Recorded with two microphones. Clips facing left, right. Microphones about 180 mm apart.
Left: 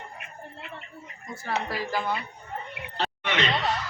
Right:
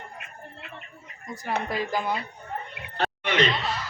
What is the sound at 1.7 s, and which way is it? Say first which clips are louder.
Speech: right 3 dB; 20° right (ahead or behind).